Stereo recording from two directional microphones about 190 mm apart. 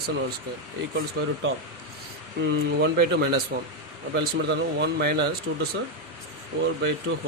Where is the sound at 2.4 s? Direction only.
65° right (ahead or behind).